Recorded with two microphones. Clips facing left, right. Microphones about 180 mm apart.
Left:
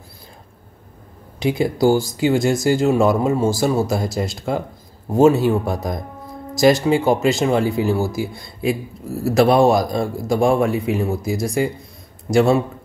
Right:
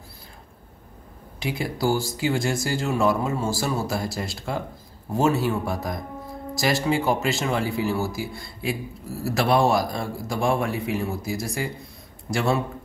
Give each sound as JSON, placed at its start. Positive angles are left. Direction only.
{"t": 1.4, "sound": "speech", "side_deg": 20}